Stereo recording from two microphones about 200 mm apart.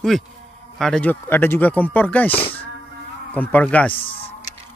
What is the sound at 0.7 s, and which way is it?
Speech, 5° left (ahead or behind).